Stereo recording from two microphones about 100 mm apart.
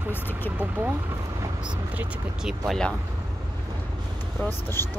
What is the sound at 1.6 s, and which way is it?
Speech, 10° right (ahead or behind).